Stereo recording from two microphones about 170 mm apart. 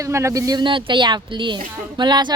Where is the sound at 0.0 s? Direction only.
15° right (ahead or behind).